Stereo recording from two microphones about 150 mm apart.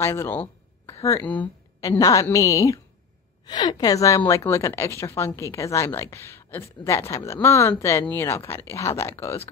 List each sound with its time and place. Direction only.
0.0 s speech: 15° left (ahead or behind)
1.2 s speech: 10° left (ahead or behind)
1.8 s a woman's voice: 25° left (ahead or behind)